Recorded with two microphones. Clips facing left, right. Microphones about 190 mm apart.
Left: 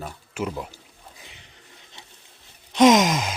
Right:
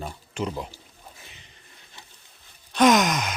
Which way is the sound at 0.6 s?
15° left (ahead or behind).